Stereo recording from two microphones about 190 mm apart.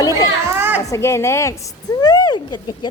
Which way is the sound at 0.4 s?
10° right (ahead or behind).